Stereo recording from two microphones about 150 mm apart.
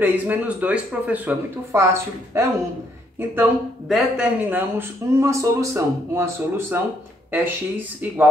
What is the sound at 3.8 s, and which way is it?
Speech, centre (ahead or behind).